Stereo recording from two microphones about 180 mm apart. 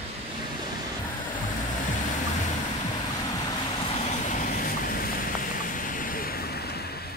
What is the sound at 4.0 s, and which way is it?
Vehicle, 40° left (ahead or behind).